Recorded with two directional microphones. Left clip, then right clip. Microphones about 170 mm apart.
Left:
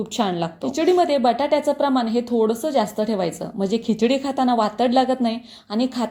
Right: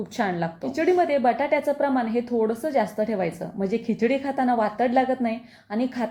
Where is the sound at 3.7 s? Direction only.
10° right (ahead or behind).